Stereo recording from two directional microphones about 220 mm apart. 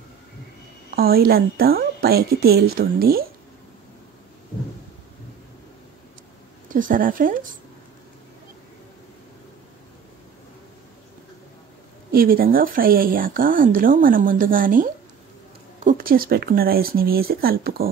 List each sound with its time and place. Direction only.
0.9 s a woman's voice: 45° right (ahead or behind)
6.7 s speech: 40° right (ahead or behind)
12.1 s a woman's voice: 40° right (ahead or behind)